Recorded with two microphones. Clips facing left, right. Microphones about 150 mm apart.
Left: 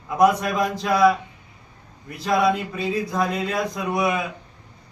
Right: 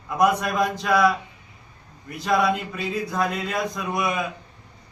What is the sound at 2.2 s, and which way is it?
Speech, centre (ahead or behind).